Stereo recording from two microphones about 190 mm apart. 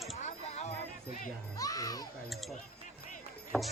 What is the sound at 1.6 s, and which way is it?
Music, 20° left (ahead or behind).